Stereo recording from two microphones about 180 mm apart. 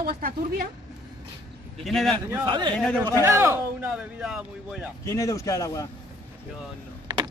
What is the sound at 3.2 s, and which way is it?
Speech, 15° right (ahead or behind).